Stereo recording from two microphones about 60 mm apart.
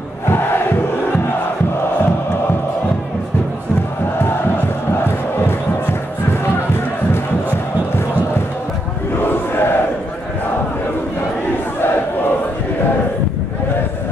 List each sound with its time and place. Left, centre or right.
9.2 s crowd: left